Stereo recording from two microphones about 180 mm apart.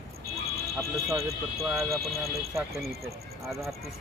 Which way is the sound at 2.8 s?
15° right (ahead or behind).